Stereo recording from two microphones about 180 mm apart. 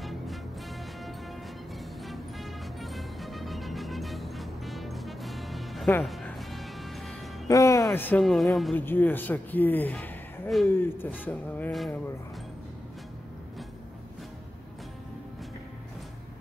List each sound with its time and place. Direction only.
2.0 s music: centre (ahead or behind)
7.4 s music: 20° left (ahead or behind)
7.9 s speech: 10° left (ahead or behind)
8.7 s a man's voice: 10° left (ahead or behind)